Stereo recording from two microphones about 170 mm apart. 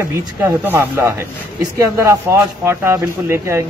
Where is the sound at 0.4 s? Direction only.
15° right (ahead or behind).